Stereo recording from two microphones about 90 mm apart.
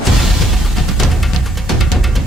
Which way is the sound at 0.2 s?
Centre (ahead or behind).